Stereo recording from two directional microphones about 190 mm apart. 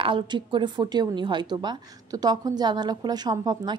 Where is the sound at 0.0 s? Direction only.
25° right (ahead or behind).